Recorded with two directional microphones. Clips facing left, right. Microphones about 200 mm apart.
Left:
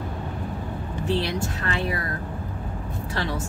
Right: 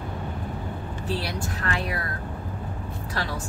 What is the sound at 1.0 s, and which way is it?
Speech, 20° left (ahead or behind).